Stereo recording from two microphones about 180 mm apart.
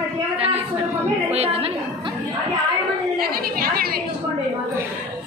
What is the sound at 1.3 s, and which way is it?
Speech, 35° right (ahead or behind).